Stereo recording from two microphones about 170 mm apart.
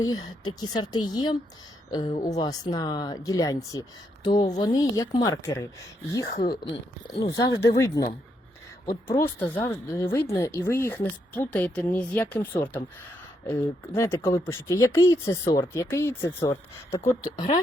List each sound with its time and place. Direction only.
0.0 s speech: 25° left (ahead or behind)
7.2 s speech: 20° left (ahead or behind)
9.0 s speech: 15° left (ahead or behind)